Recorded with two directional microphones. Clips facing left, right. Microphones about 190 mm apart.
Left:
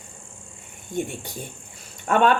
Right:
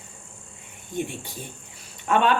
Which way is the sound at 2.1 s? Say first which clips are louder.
Left 1 dB; 45° left (ahead or behind).